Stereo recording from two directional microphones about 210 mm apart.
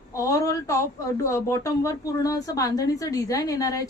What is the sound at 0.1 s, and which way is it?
Speech, 15° left (ahead or behind).